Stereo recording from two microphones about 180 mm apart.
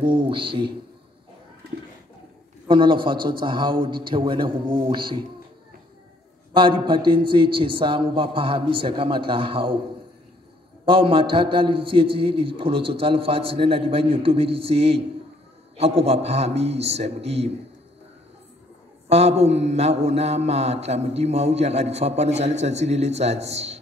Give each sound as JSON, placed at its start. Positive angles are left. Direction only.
{"t": 0.0, "sound": "a man's voice", "side_deg": -25}
{"t": 2.7, "sound": "a man's voice", "side_deg": -25}
{"t": 6.5, "sound": "a man's voice", "side_deg": -30}
{"t": 10.9, "sound": "a man's voice", "side_deg": -30}
{"t": 19.0, "sound": "a man's voice", "side_deg": -35}